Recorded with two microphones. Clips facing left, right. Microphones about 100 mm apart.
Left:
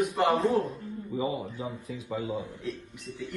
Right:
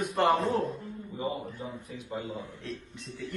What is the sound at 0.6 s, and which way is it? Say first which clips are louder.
Speech: left 2 dB; centre (ahead or behind).